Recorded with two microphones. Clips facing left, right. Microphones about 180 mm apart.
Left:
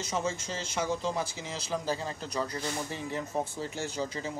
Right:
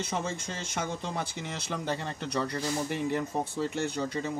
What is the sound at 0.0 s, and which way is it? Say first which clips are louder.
Speech: left 1 dB; 60° right (ahead or behind).